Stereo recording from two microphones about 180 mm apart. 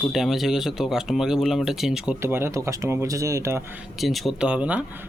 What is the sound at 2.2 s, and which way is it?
Speech, 15° right (ahead or behind).